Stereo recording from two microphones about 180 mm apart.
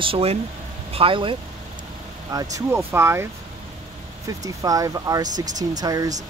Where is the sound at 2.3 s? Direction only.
15° right (ahead or behind).